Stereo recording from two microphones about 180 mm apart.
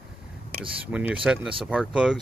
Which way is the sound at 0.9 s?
5° right (ahead or behind).